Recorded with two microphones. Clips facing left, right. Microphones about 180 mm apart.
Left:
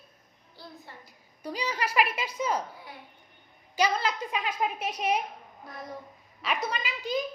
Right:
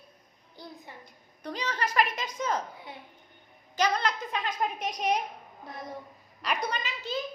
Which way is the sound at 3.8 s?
10° left (ahead or behind).